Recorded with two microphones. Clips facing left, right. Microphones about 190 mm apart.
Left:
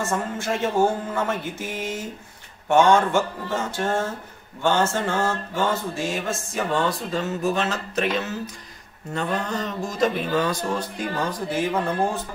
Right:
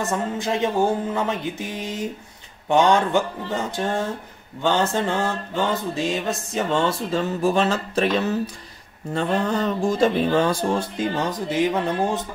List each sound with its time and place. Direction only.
0.0 s a man's voice: 15° right (ahead or behind)
4.6 s mantra: 15° right (ahead or behind)